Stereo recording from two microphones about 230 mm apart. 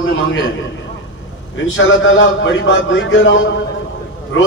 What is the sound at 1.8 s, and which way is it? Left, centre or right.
A man's voice, left.